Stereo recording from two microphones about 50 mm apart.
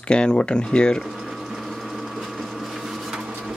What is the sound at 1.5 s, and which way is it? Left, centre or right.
Sewing machine, centre.